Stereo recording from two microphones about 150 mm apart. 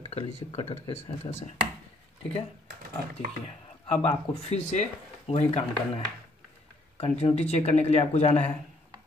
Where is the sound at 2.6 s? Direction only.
90° right.